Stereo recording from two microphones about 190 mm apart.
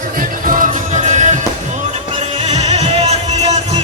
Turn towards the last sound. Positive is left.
turn(degrees=-35)  # may be behind; listen again after turning